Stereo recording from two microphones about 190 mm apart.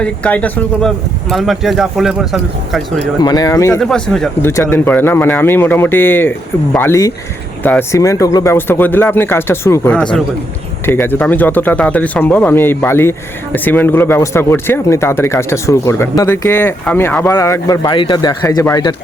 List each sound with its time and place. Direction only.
0.0 s speech: 5° left (ahead or behind)
3.2 s speech: 20° left (ahead or behind)
3.8 s speech: 5° left (ahead or behind); by 18.9 s 20° left (ahead or behind)